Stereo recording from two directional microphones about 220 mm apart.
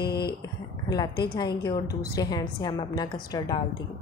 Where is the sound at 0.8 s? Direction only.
20° left (ahead or behind).